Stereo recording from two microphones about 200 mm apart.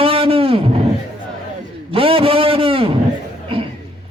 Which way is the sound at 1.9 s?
30° right (ahead or behind).